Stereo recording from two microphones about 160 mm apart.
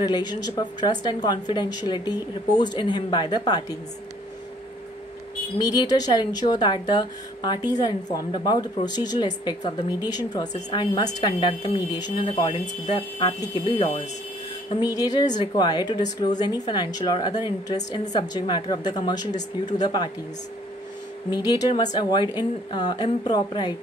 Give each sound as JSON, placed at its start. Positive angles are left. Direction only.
{"t": 0.0, "sound": "speech", "side_deg": 25}
{"t": 5.6, "sound": "speech", "side_deg": 25}
{"t": 14.9, "sound": "speech", "side_deg": 25}
{"t": 21.3, "sound": "speech", "side_deg": 25}